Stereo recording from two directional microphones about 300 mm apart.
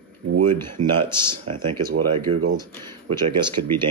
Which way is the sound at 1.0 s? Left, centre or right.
Centre.